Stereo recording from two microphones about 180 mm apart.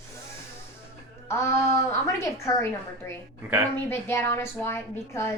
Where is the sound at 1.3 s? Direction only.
15° left (ahead or behind).